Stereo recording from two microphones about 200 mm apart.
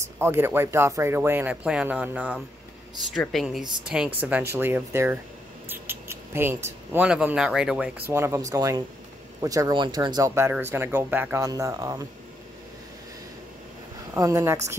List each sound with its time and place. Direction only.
0.2 s speech: 10° right (ahead or behind)
14.1 s speech: 15° right (ahead or behind)